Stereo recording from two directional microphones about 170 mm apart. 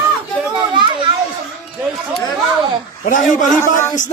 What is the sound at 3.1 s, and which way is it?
Speech, 50° left (ahead or behind).